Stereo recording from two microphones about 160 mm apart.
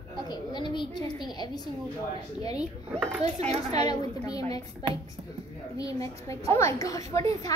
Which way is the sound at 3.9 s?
25° left (ahead or behind).